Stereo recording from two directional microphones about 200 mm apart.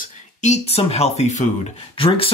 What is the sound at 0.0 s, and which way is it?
Speech, 35° left (ahead or behind).